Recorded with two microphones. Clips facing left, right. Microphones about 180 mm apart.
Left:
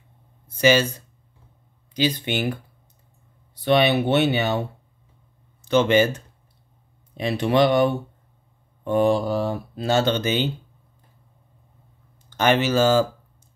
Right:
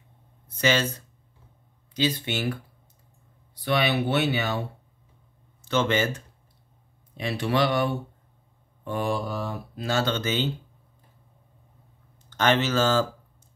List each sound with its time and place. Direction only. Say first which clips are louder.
0.5 s speech: left 6 dB; 10° left (ahead or behind)
2.0 s speech: left 3 dB; 15° left (ahead or behind)
3.6 s speech: left 6 dB; 25° left (ahead or behind)
5.7 s speech: left 6 dB; 15° left (ahead or behind)
12.3 s speech: left 3 dB; 10° left (ahead or behind)